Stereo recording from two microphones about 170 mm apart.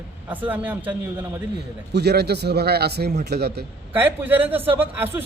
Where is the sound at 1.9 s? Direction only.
75° right (ahead or behind).